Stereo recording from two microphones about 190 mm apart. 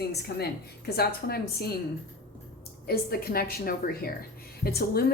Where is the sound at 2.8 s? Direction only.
55° left (ahead or behind).